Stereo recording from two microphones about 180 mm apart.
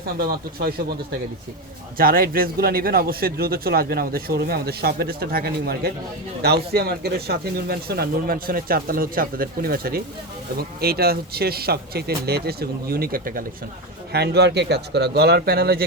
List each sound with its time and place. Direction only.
0.0 s a man's voice: 55° right (ahead or behind)
14.1 s a man's voice: 65° right (ahead or behind)